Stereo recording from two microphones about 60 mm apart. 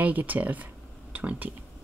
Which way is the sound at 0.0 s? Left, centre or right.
Right.